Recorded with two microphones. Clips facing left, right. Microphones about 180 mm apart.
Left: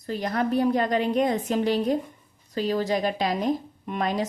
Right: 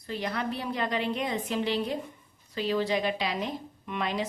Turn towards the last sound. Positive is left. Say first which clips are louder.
# left 5 dB
turn(degrees=45)  # may be behind; listen again after turning